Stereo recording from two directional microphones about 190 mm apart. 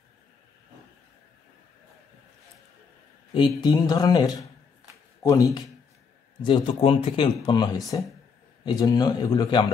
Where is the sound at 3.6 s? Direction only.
20° left (ahead or behind).